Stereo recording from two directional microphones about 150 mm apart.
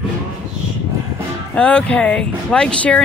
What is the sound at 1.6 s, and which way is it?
Speech, 10° left (ahead or behind).